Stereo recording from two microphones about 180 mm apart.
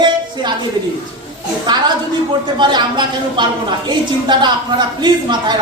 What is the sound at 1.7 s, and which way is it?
A woman's voice, 25° right (ahead or behind).